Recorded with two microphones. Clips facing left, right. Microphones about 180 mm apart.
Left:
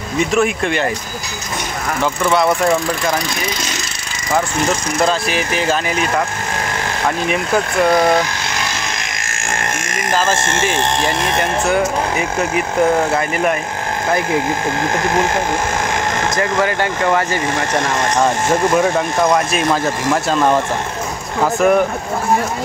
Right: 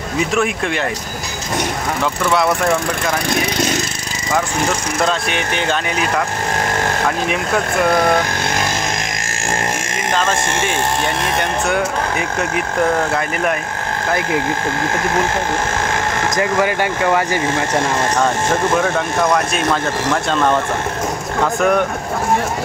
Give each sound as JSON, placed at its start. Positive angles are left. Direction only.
{"t": 0.3, "sound": "speech", "side_deg": 0}
{"t": 3.3, "sound": "speech", "side_deg": -55}
{"t": 5.0, "sound": "speech", "side_deg": 5}
{"t": 10.1, "sound": "speech", "side_deg": 5}
{"t": 16.3, "sound": "speech", "side_deg": -15}
{"t": 17.7, "sound": "speech", "side_deg": 15}
{"t": 21.5, "sound": "speech", "side_deg": 5}